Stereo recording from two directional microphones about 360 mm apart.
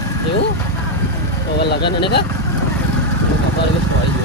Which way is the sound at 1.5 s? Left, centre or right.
Left.